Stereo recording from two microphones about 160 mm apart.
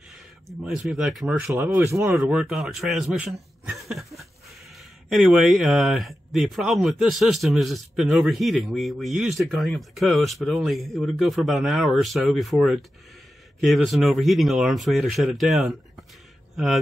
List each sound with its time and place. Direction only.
0.1 s speech: centre (ahead or behind)
1.5 s speech: 15° right (ahead or behind)
2.0 s a man's voice: 5° right (ahead or behind)